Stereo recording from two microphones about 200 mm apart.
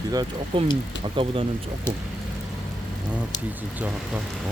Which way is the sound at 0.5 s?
25° right (ahead or behind).